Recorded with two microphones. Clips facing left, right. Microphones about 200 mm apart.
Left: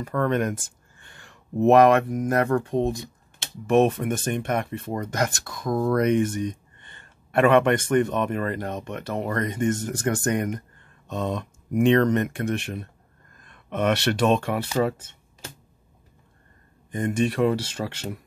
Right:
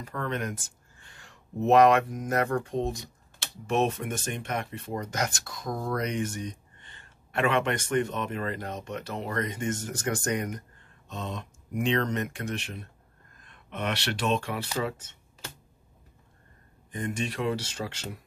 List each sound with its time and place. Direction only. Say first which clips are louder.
0.0 s speech: left 9 dB; 55° left (ahead or behind)
16.9 s speech: left 8 dB; 50° left (ahead or behind)